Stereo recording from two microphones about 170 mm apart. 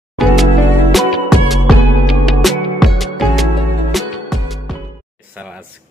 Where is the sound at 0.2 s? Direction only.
Centre (ahead or behind).